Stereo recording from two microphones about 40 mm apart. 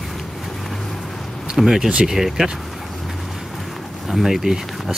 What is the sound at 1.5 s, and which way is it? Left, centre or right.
Speech, centre.